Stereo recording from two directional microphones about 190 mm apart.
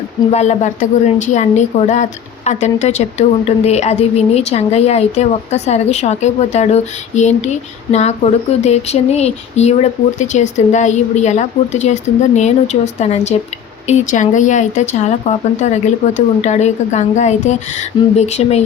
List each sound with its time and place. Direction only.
0.3 s speech: 35° left (ahead or behind)